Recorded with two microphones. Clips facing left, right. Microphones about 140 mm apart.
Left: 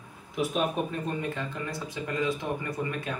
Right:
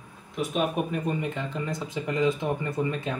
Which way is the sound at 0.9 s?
20° right (ahead or behind).